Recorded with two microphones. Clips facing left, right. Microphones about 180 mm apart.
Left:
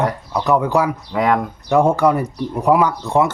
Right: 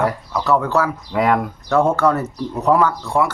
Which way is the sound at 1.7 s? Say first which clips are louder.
Left 2 dB; 15° left (ahead or behind).